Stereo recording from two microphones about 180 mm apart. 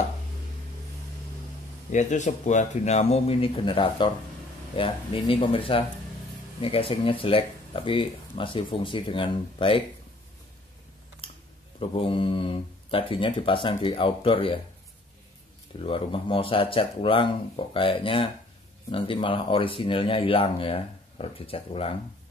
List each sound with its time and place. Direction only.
1.9 s speech: 40° left (ahead or behind)
11.2 s typing: 30° left (ahead or behind)
11.8 s speech: 30° left (ahead or behind)
15.8 s speech: 30° left (ahead or behind)